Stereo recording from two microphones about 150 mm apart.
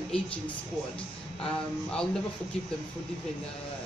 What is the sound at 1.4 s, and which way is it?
Speech, 5° left (ahead or behind).